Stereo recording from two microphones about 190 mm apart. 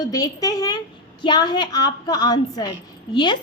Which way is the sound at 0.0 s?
20° left (ahead or behind).